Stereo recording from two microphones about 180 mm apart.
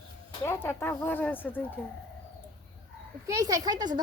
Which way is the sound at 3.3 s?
20° right (ahead or behind).